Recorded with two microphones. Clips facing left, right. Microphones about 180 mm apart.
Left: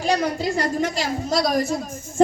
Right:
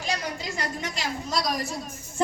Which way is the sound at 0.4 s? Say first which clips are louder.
Left 10 dB; 50° left (ahead or behind).